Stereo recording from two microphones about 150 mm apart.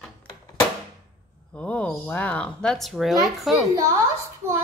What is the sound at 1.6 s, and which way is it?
Speech, 10° left (ahead or behind).